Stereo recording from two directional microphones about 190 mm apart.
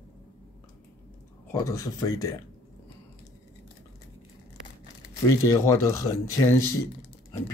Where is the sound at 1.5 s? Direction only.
15° left (ahead or behind).